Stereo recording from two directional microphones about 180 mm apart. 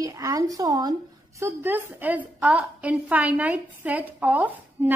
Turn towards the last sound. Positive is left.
turn(degrees=-10)  # may be behind; listen again after turning